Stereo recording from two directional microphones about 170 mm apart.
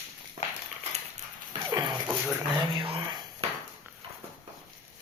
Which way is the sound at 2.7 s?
30° right (ahead or behind).